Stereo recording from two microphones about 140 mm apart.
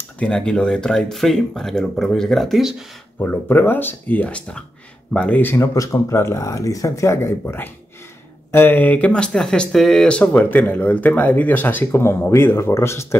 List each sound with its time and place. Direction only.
0.2 s speech: 5° left (ahead or behind)
3.2 s speech: 15° left (ahead or behind)